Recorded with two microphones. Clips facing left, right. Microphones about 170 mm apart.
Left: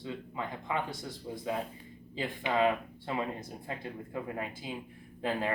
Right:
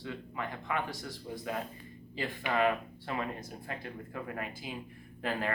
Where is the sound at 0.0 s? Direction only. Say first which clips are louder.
Left 1 dB; 20° left (ahead or behind).